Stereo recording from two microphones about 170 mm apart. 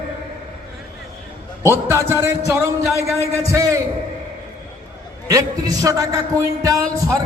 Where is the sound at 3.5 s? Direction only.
20° right (ahead or behind).